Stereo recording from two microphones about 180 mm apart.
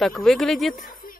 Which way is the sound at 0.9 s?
50° left (ahead or behind).